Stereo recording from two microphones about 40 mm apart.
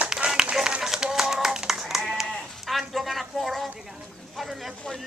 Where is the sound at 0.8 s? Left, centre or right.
Centre.